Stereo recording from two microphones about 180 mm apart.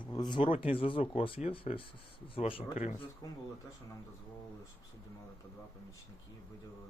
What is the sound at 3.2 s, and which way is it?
Speech, 20° left (ahead or behind).